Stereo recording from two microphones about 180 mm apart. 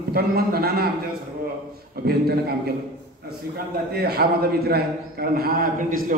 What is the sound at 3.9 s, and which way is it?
A man's voice, 60° right (ahead or behind).